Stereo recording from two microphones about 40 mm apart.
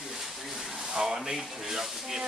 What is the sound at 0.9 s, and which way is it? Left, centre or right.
Speech, centre.